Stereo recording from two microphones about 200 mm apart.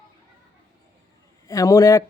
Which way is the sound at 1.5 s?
15° left (ahead or behind).